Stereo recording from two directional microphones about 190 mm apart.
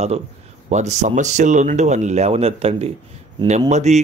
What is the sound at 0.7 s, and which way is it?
Speech, 35° right (ahead or behind).